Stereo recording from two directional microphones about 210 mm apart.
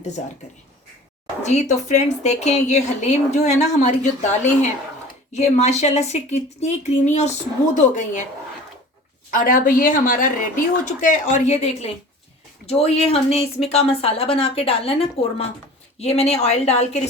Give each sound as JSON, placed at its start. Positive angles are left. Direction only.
{"t": 1.4, "sound": "a woman's voice", "side_deg": 35}
{"t": 9.3, "sound": "a woman's voice", "side_deg": 40}